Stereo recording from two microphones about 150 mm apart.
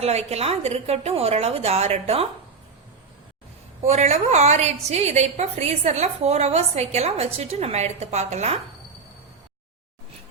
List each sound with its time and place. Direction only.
0.0 s a woman's voice: 45° right (ahead or behind)
3.8 s a woman's voice: 50° right (ahead or behind)